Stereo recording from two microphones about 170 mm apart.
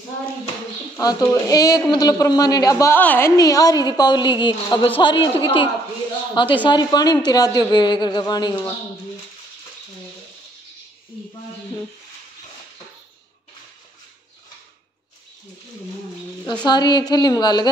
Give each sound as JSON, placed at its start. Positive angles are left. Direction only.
{"t": 0.9, "sound": "speech", "side_deg": 20}
{"t": 16.6, "sound": "speech", "side_deg": 25}